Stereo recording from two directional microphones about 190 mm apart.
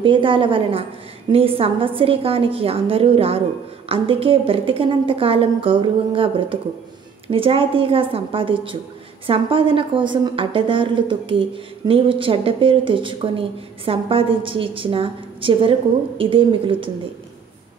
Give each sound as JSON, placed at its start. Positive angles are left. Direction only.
{"t": 0.0, "sound": "a woman's voice", "side_deg": -25}